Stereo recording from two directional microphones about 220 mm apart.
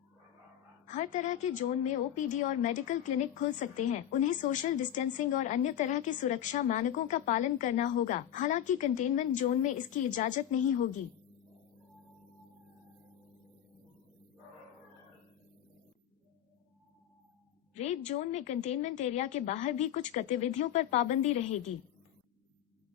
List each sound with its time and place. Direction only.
0.9 s a woman's voice: 35° left (ahead or behind)
17.7 s a woman's voice: 30° left (ahead or behind)